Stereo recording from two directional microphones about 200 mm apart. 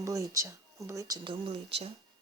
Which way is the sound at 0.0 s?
15° right (ahead or behind).